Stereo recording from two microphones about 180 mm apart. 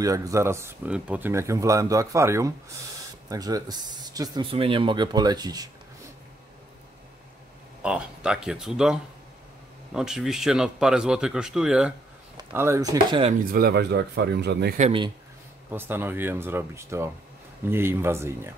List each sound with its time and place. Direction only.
0.0 s speech: 20° right (ahead or behind)
7.8 s speech: 5° right (ahead or behind)
12.4 s speech: 15° right (ahead or behind)
13.5 s speech: 60° right (ahead or behind)
14.8 s speech: 30° right (ahead or behind)
15.7 s speech: 10° right (ahead or behind)